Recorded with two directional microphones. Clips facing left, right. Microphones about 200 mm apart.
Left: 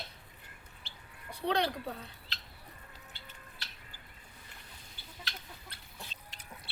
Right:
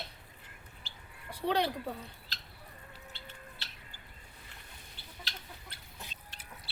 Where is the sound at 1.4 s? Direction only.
10° right (ahead or behind).